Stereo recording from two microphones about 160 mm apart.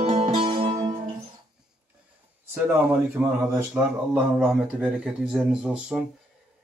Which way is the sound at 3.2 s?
10° right (ahead or behind).